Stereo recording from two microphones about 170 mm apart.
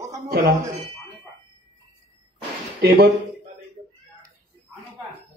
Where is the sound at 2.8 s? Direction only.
75° right (ahead or behind).